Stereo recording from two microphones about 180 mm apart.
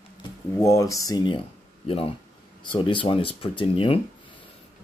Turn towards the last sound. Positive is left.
turn(degrees=30)  # may be behind; listen again after turning